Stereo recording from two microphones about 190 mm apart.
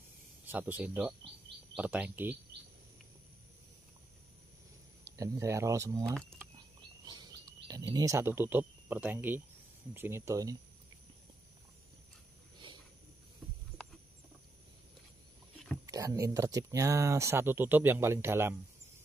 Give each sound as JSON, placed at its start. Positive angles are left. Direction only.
{"t": 0.5, "sound": "speech", "side_deg": -10}
{"t": 5.1, "sound": "speech", "side_deg": -15}
{"t": 7.1, "sound": "bird", "side_deg": -20}
{"t": 7.9, "sound": "speech", "side_deg": -15}
{"t": 15.9, "sound": "speech", "side_deg": -20}